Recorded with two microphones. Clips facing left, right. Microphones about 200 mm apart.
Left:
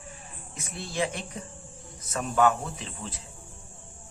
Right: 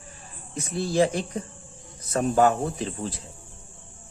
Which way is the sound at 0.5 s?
35° right (ahead or behind).